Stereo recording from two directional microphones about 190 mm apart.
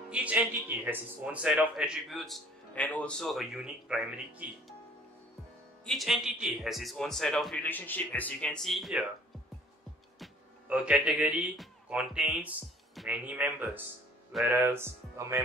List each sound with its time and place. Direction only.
0.1 s a man's voice: 5° right (ahead or behind)
5.9 s a man's voice: centre (ahead or behind)
10.1 s speech: 5° right (ahead or behind)